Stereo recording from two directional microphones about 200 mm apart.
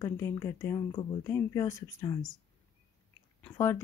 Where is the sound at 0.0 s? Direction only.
15° left (ahead or behind).